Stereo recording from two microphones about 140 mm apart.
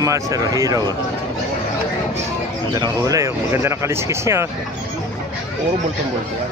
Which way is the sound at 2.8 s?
25° right (ahead or behind).